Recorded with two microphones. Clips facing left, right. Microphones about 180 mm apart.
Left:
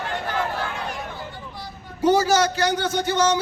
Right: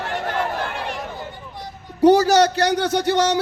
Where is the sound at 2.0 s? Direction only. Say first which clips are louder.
Right 5 dB; 65° right (ahead or behind).